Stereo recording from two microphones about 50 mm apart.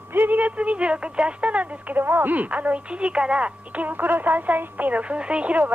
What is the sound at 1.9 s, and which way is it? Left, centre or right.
Speech, right.